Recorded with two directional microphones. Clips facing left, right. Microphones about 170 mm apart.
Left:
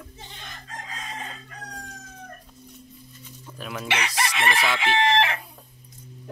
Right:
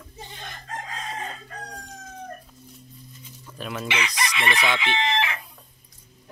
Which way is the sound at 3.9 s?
50° left (ahead or behind).